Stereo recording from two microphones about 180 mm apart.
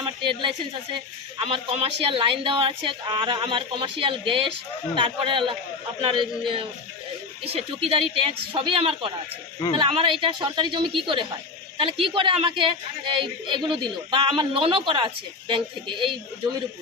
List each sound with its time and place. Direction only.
0.0 s speech: 30° right (ahead or behind)